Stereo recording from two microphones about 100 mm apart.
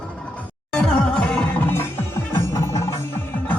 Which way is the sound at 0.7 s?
10° left (ahead or behind).